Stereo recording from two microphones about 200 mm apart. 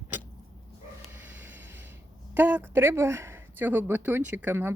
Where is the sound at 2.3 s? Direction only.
10° right (ahead or behind).